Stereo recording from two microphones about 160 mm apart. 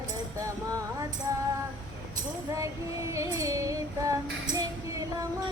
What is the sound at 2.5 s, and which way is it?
Female singing, 20° right (ahead or behind).